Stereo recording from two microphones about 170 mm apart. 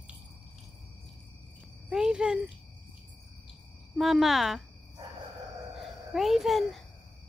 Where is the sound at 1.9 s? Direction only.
5° right (ahead or behind).